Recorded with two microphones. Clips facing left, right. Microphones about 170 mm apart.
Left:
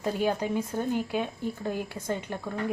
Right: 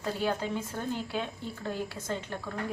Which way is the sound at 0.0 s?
15° left (ahead or behind).